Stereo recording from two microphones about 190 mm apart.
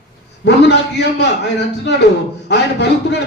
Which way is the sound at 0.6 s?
65° left (ahead or behind).